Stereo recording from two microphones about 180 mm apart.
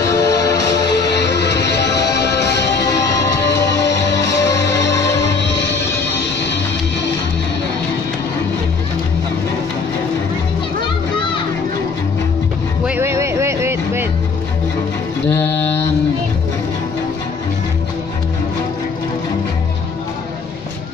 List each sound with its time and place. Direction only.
0.0 s music: 20° left (ahead or behind)
0.5 s music: 70° left (ahead or behind)
2.8 s music: 20° left (ahead or behind)
3.4 s music: 75° left (ahead or behind)
6.4 s music: 75° left (ahead or behind)
12.8 s music: 10° right (ahead or behind)
15.4 s mantra: 75° left (ahead or behind)